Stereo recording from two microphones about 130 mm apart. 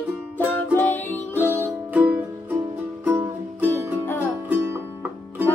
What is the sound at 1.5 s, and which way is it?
Music, 10° right (ahead or behind).